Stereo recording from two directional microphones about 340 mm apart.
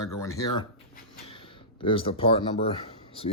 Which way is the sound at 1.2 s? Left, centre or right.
Centre.